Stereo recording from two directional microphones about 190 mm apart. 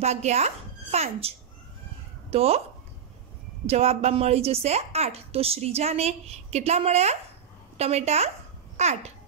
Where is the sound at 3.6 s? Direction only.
35° right (ahead or behind).